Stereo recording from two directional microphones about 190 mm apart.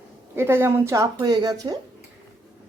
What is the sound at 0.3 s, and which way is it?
A woman's voice, 10° right (ahead or behind).